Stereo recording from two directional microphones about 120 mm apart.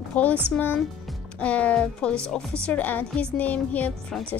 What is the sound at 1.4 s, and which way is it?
Speech, 10° left (ahead or behind).